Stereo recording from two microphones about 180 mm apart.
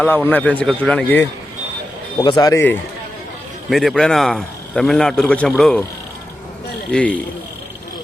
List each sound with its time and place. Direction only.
0.0 s a man's voice: 10° left (ahead or behind)
2.1 s speech: 25° left (ahead or behind)
3.7 s a man's voice: centre (ahead or behind)
6.9 s a man's voice: 5° left (ahead or behind)